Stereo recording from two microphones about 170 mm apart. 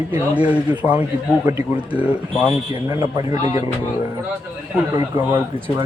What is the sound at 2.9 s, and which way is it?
Speech, 20° right (ahead or behind).